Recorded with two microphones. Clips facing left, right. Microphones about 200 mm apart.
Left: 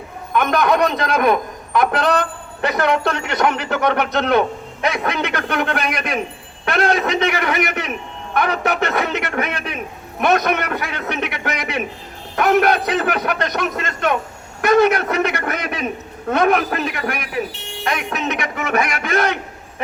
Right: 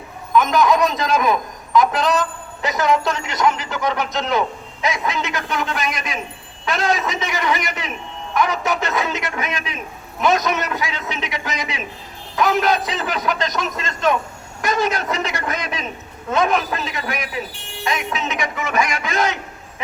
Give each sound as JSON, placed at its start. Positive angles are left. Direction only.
{"t": 0.3, "sound": "a man's voice", "side_deg": 60}